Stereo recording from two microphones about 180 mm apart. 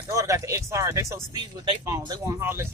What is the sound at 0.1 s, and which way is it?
Speech, 15° right (ahead or behind).